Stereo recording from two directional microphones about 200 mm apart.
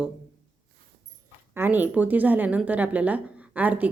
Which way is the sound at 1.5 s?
10° right (ahead or behind).